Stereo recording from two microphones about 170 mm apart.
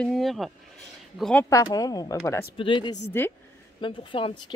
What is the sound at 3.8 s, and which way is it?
Speech, 30° left (ahead or behind).